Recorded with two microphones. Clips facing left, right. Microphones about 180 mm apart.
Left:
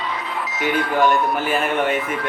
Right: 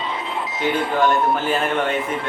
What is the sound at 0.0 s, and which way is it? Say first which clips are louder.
Music: even; 25° right (ahead or behind).